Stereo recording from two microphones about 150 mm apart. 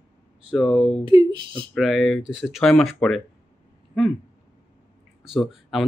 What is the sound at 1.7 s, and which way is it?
Speech, centre (ahead or behind).